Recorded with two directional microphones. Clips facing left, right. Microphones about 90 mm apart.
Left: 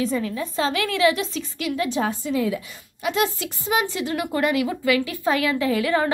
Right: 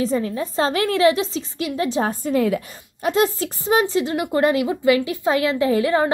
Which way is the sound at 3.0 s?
40° right (ahead or behind).